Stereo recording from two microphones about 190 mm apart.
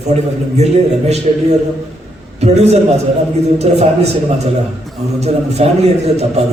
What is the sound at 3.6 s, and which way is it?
A man's voice, 35° right (ahead or behind).